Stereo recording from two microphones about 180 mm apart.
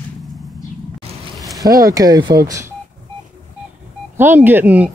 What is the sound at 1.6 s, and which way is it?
Speech, 20° right (ahead or behind).